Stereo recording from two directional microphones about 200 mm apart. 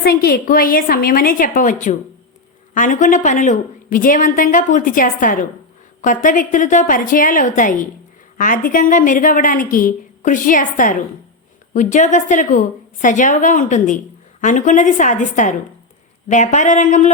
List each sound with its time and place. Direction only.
0.0 s a woman's voice: 50° left (ahead or behind)